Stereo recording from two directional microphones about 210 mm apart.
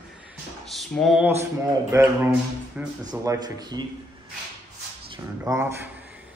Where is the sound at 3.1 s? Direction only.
20° right (ahead or behind).